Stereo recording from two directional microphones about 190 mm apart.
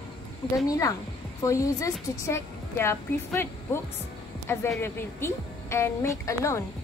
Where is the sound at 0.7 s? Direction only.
20° left (ahead or behind).